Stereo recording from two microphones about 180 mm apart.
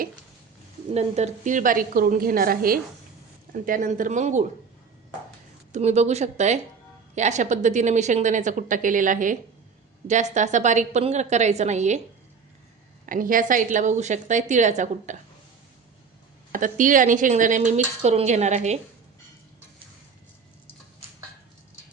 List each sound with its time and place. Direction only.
0.9 s speech: 40° right (ahead or behind)
5.7 s a woman's voice: 40° right (ahead or behind)
13.1 s speech: 50° right (ahead or behind)
16.5 s speech: 45° right (ahead or behind)